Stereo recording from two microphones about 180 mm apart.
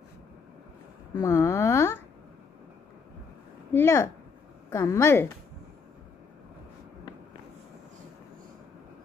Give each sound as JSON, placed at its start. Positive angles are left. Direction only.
{"t": 1.1, "sound": "speech", "side_deg": 15}
{"t": 3.7, "sound": "a woman's voice", "side_deg": 15}